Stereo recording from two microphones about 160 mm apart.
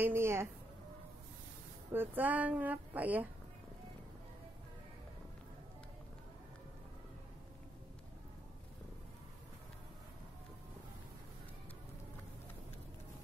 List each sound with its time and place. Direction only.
0.0 s speech: 15° right (ahead or behind)
1.9 s speech: 10° right (ahead or behind)